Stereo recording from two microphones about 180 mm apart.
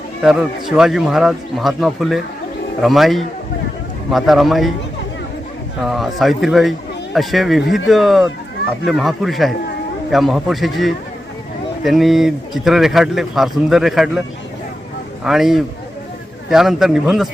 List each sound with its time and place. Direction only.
0.2 s speech: 5° right (ahead or behind)
5.8 s speech: centre (ahead or behind)